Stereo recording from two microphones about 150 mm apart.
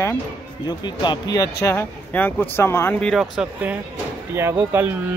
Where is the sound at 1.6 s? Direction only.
15° left (ahead or behind).